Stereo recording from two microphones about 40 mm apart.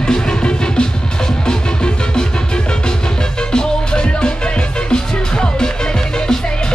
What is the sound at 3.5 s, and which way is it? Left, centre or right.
Music, centre.